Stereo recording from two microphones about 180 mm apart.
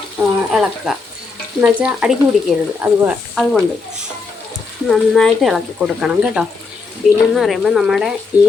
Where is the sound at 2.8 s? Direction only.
10° right (ahead or behind).